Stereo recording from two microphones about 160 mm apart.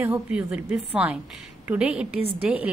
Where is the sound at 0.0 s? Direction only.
10° right (ahead or behind).